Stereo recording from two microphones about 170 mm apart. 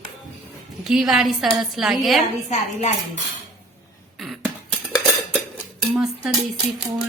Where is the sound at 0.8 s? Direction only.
5° right (ahead or behind).